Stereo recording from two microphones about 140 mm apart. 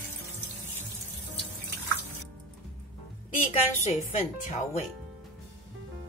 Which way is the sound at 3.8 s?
55° left (ahead or behind).